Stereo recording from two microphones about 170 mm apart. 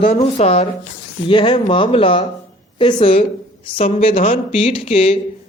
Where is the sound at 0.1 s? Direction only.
35° left (ahead or behind).